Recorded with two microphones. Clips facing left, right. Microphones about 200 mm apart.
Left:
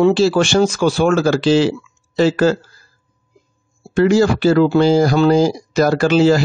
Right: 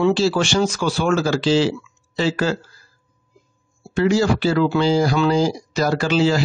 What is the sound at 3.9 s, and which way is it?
Speech, 50° left (ahead or behind).